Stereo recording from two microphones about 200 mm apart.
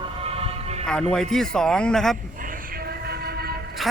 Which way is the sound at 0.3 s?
30° right (ahead or behind).